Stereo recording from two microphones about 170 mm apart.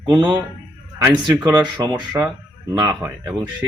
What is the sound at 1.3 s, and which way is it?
Speech, 10° right (ahead or behind).